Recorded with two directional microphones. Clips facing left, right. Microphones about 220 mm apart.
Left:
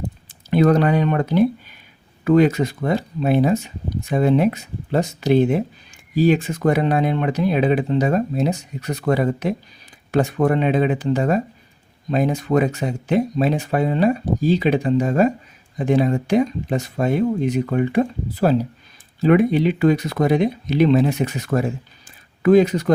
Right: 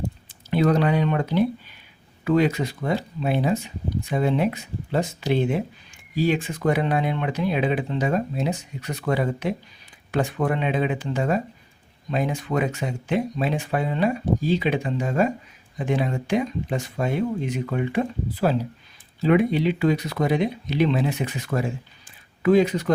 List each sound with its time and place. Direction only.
0.3 s speech: 50° left (ahead or behind)